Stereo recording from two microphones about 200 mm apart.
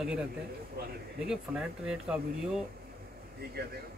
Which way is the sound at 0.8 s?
50° right (ahead or behind).